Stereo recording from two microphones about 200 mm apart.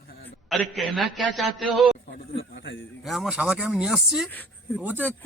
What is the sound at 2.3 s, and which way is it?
Speech, 65° left (ahead or behind).